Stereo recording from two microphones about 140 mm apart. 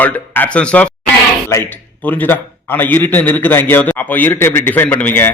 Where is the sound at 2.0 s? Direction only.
15° left (ahead or behind).